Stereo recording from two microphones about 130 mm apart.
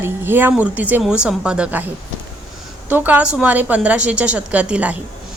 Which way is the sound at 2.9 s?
15° right (ahead or behind).